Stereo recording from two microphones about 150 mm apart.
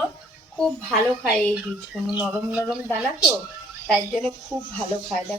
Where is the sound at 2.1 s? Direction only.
10° right (ahead or behind).